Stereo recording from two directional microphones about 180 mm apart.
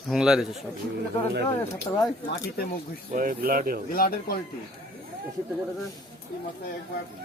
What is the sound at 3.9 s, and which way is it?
Speech, 55° left (ahead or behind).